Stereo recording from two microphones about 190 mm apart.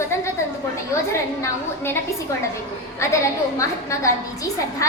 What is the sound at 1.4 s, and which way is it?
Speech, 10° left (ahead or behind).